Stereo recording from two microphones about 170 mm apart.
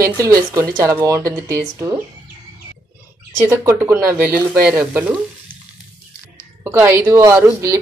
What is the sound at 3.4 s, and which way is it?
Speech, 15° right (ahead or behind).